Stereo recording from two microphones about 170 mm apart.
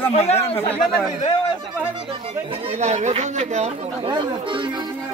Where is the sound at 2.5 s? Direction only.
40° right (ahead or behind).